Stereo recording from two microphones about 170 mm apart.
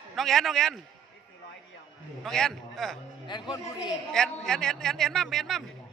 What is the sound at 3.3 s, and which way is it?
Speech, 25° left (ahead or behind).